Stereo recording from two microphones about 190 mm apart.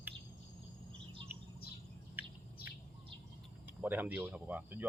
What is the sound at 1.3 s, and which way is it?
Insect, 10° right (ahead or behind).